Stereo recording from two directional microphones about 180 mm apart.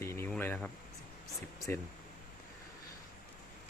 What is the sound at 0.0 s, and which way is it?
Vehicle, 15° left (ahead or behind).